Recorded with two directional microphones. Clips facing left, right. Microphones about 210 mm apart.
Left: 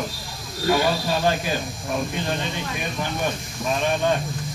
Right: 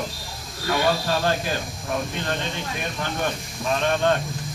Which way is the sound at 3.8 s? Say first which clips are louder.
Right 1 dB; 10° left (ahead or behind).